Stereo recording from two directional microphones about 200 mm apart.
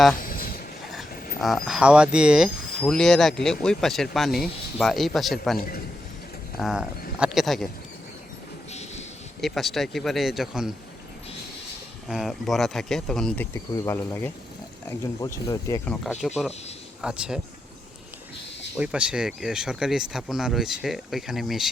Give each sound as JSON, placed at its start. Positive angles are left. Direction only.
{"t": 0.2, "sound": "a sound", "side_deg": 45}
{"t": 0.9, "sound": "speech", "side_deg": 0}
{"t": 5.5, "sound": "a man's voice", "side_deg": 50}
{"t": 6.6, "sound": "speech", "side_deg": 0}
{"t": 8.7, "sound": "a sound", "side_deg": 35}
{"t": 9.4, "sound": "speech", "side_deg": 0}
{"t": 12.0, "sound": "speech", "side_deg": 0}
{"t": 16.2, "sound": "speech", "side_deg": 0}
{"t": 18.8, "sound": "speech", "side_deg": -5}